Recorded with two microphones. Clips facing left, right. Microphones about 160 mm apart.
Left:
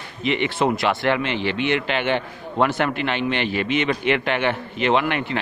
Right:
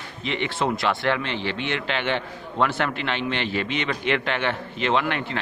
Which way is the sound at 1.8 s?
10° left (ahead or behind).